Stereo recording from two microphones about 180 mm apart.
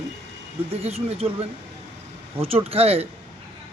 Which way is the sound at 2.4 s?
35° right (ahead or behind).